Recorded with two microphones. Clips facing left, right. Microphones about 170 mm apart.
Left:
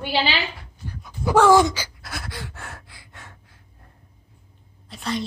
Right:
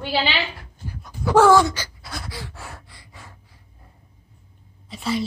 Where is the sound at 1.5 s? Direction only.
15° left (ahead or behind).